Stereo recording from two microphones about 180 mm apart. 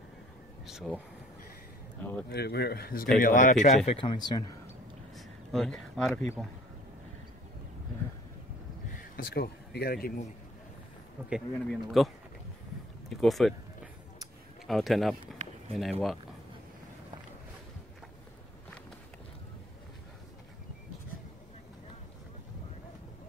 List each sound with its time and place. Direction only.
0.7 s speech: 5° right (ahead or behind)
2.2 s speech: 65° left (ahead or behind); by 4.5 s 25° left (ahead or behind)
5.1 s a sound: centre (ahead or behind)
9.1 s speech: 60° left (ahead or behind)
11.2 s speech: centre (ahead or behind)
13.1 s speech: centre (ahead or behind)
14.7 s speech: centre (ahead or behind)